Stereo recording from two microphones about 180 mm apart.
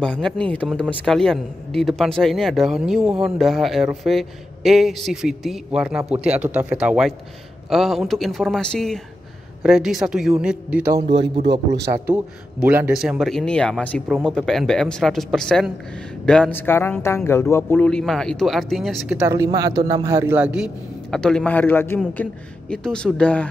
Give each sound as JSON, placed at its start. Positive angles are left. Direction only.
{"t": 0.0, "sound": "speech", "side_deg": 5}
{"t": 12.1, "sound": "speech", "side_deg": -10}
{"t": 19.2, "sound": "speech", "side_deg": -20}